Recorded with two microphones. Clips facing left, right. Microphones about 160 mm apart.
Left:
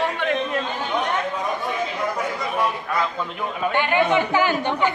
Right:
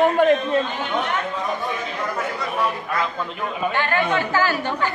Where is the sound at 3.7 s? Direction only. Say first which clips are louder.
Left 4 dB; 15° left (ahead or behind).